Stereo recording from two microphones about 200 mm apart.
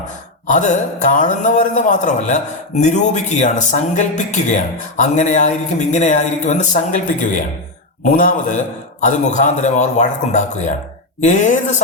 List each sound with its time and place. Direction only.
0.4 s a man's voice: 35° left (ahead or behind)